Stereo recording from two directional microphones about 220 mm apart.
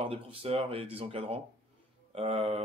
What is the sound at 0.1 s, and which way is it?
A man's voice, 25° right (ahead or behind).